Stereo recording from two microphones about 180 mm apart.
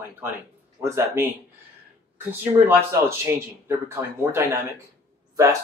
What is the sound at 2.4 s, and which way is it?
Speech, 10° right (ahead or behind).